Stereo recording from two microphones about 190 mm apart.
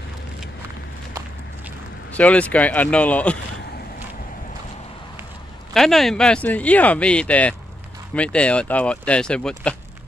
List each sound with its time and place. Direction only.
2.1 s speech: 5° left (ahead or behind)
5.7 s speech: centre (ahead or behind)